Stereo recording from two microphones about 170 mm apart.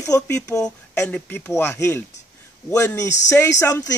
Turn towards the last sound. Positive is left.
turn(degrees=15)  # may be behind; listen again after turning